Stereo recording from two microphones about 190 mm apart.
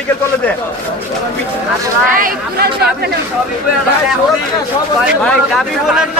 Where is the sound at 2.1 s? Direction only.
45° right (ahead or behind).